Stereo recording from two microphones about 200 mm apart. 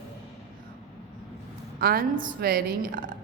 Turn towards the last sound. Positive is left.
turn(degrees=-45)  # may be behind; listen again after turning